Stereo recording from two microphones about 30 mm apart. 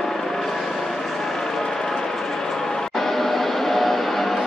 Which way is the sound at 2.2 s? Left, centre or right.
Centre.